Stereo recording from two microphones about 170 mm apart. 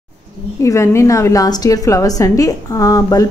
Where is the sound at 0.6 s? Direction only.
15° left (ahead or behind).